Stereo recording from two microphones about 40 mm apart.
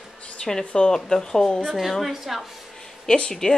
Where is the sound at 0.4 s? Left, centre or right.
Centre.